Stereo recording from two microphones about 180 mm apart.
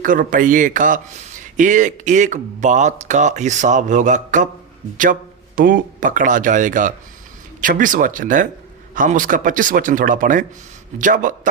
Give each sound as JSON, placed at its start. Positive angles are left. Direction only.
{"t": 0.0, "sound": "speech", "side_deg": -45}
{"t": 5.5, "sound": "speech", "side_deg": -50}